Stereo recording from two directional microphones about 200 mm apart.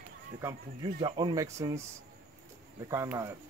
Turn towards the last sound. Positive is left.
turn(degrees=-15)  # may be behind; listen again after turning